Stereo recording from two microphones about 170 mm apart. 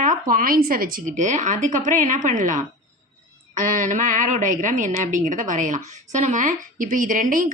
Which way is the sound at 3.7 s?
50° right (ahead or behind).